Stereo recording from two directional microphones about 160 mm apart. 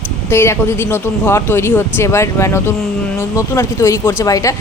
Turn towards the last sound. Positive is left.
turn(degrees=20)  # may be behind; listen again after turning